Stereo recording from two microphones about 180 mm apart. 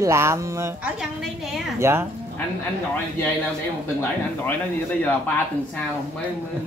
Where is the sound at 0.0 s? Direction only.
15° right (ahead or behind).